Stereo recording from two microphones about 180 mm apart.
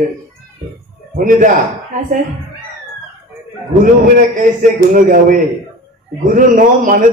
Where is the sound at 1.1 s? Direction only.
45° right (ahead or behind).